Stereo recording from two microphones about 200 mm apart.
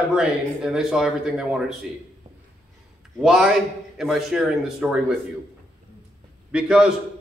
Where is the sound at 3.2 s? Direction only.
5° right (ahead or behind).